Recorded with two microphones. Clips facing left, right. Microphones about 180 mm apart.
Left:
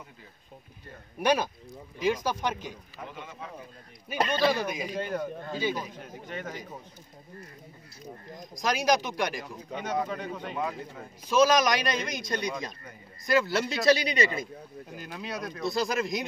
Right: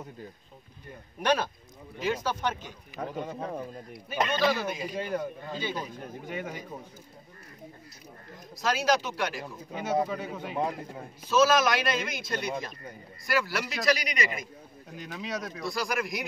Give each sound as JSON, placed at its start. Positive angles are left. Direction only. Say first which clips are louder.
{"t": 1.2, "sound": "a man's voice", "louder": "left 1 dB", "side_deg": 10}
{"t": 3.0, "sound": "speech", "louder": "right 9 dB", "side_deg": -40}
{"t": 4.5, "sound": "a man's voice", "louder": "left 1 dB", "side_deg": 15}
{"t": 4.9, "sound": "a man's voice", "louder": "even", "side_deg": -10}
{"t": 5.5, "sound": "a man's voice", "louder": "left 4 dB", "side_deg": 10}
{"t": 6.2, "sound": "a man's voice", "louder": "right 1 dB", "side_deg": -10}
{"t": 8.4, "sound": "a man's voice", "louder": "even", "side_deg": 15}
{"t": 10.0, "sound": "a man's voice", "louder": "even", "side_deg": -5}
{"t": 11.2, "sound": "a man's voice", "louder": "left 1 dB", "side_deg": 15}
{"t": 15.0, "sound": "speech", "louder": "right 2 dB", "side_deg": 0}
{"t": 15.6, "sound": "speech", "louder": "left 4 dB", "side_deg": 20}